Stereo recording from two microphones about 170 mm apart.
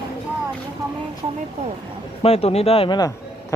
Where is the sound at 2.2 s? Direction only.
35° left (ahead or behind).